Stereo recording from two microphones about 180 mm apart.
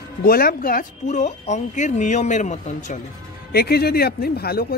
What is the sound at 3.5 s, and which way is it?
Speech, 60° left (ahead or behind).